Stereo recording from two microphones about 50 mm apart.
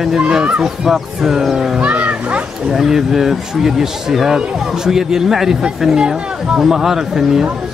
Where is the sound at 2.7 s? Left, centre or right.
Centre.